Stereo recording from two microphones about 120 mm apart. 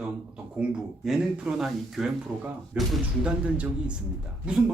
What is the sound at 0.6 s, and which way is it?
Speech, 10° right (ahead or behind).